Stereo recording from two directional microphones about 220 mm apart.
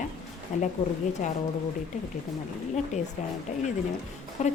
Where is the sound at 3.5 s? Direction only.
35° left (ahead or behind).